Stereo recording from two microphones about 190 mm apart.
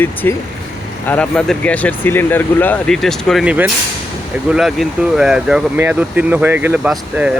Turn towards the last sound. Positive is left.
turn(degrees=-5)  # may be behind; listen again after turning